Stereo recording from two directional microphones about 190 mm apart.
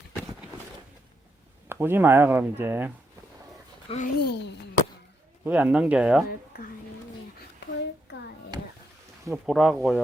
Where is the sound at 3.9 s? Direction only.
30° left (ahead or behind).